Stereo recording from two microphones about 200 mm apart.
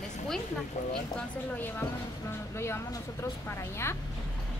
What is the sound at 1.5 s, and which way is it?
Speech, 10° left (ahead or behind).